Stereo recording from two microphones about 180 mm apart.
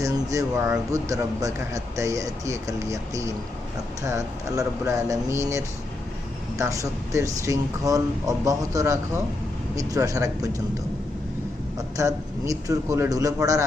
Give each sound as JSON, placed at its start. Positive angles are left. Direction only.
{"t": 0.0, "sound": "a man's voice", "side_deg": -20}
{"t": 11.9, "sound": "a man's voice", "side_deg": -20}